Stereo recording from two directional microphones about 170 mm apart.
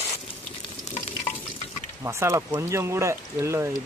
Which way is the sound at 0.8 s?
40° left (ahead or behind).